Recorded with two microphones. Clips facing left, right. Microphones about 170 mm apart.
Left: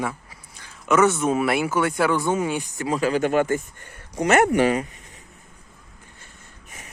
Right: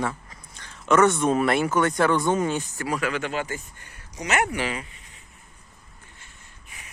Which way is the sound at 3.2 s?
50° left (ahead or behind).